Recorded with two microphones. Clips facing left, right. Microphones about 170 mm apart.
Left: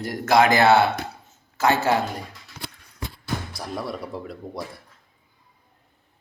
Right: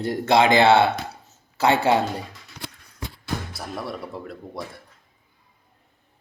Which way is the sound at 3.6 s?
Centre (ahead or behind).